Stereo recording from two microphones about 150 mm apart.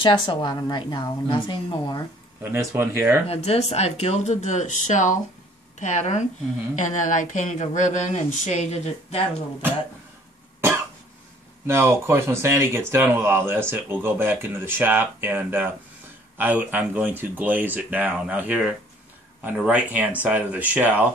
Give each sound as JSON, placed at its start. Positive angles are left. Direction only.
{"t": 0.0, "sound": "a woman's voice", "side_deg": 30}
{"t": 2.4, "sound": "speech", "side_deg": -15}
{"t": 3.3, "sound": "speech", "side_deg": 45}
{"t": 11.6, "sound": "speech", "side_deg": -15}